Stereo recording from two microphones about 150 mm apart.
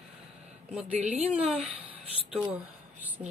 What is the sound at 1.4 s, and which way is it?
Speech, 40° right (ahead or behind).